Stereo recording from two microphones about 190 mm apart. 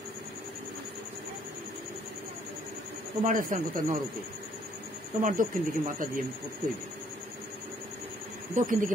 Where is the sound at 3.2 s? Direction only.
45° right (ahead or behind).